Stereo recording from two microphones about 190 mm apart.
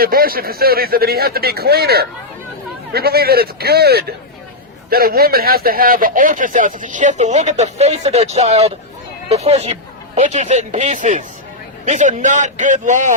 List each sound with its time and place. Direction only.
0.0 s a man's voice: 50° right (ahead or behind)